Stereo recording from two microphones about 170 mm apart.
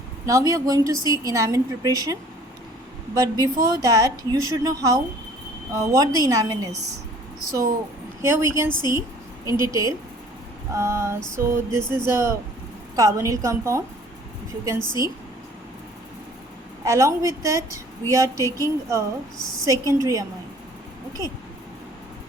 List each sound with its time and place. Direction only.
0.3 s a woman's voice: 20° right (ahead or behind)
3.2 s a woman's voice: 20° right (ahead or behind)
8.2 s a woman's voice: 15° right (ahead or behind)
16.8 s a woman's voice: 20° right (ahead or behind)